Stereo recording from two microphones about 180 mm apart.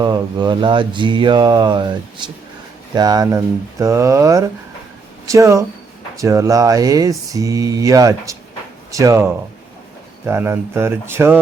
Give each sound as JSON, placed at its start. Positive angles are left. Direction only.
{"t": 0.0, "sound": "speech", "side_deg": -25}